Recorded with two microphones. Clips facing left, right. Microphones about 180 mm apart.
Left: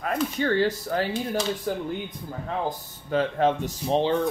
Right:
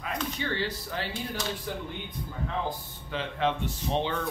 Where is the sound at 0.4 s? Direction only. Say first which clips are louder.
Left 9 dB; 45° left (ahead or behind).